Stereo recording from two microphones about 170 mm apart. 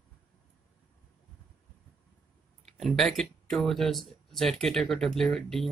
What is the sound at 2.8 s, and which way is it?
Speech, centre (ahead or behind).